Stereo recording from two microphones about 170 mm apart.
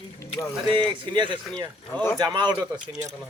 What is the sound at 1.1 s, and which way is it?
Speech, 25° right (ahead or behind).